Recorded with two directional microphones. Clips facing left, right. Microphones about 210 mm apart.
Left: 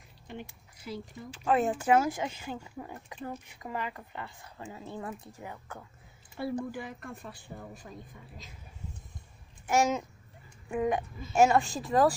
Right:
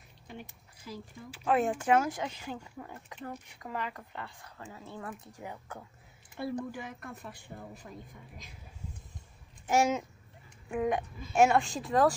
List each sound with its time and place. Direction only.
1.3 s speech: centre (ahead or behind)
2.8 s speech: 15° left (ahead or behind)
4.6 s speech: 20° left (ahead or behind)
5.4 s speech: 10° right (ahead or behind)
9.7 s speech: 10° right (ahead or behind)
10.7 s speech: centre (ahead or behind)